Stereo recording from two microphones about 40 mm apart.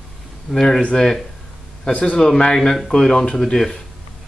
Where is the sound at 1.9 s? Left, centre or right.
Left.